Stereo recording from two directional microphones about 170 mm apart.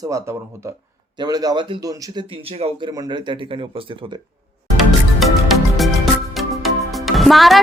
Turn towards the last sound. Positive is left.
turn(degrees=0)  # may be behind; listen again after turning